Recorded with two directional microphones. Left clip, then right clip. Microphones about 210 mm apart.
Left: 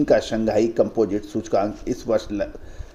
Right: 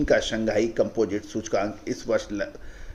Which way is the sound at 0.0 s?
20° left (ahead or behind).